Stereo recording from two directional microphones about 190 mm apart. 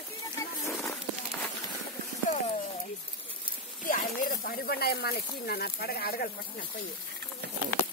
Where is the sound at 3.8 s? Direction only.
45° left (ahead or behind).